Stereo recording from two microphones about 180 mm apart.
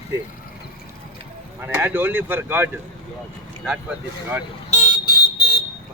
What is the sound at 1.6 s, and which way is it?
Speech, 10° right (ahead or behind).